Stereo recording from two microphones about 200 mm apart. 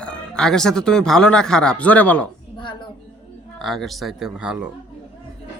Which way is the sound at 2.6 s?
25° left (ahead or behind).